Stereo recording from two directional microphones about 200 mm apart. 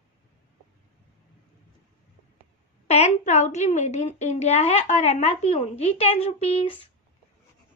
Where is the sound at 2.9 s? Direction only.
35° left (ahead or behind).